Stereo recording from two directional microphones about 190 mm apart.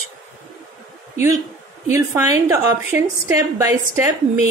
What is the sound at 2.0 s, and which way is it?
Speech, 15° right (ahead or behind).